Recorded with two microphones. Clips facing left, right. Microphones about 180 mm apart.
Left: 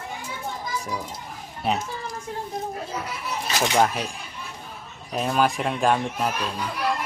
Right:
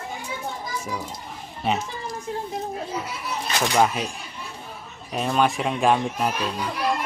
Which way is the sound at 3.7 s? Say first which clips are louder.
Right 1 dB; centre (ahead or behind).